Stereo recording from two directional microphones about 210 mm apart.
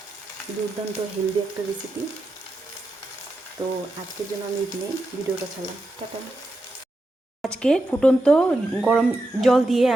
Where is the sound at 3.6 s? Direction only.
25° right (ahead or behind).